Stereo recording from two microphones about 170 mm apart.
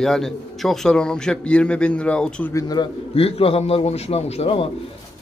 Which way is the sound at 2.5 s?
25° left (ahead or behind).